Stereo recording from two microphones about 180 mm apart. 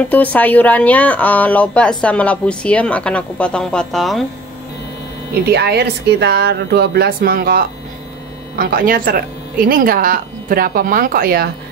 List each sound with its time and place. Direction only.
0.1 s speech: 10° left (ahead or behind)
5.3 s speech: 65° right (ahead or behind)